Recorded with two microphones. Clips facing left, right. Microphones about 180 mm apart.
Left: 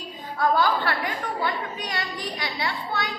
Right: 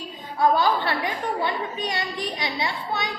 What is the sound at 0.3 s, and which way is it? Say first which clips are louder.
A woman's voice: right 2 dB; 20° right (ahead or behind).